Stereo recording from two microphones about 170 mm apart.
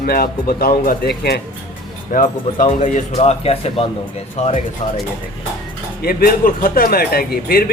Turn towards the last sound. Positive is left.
turn(degrees=65)  # may be behind; listen again after turning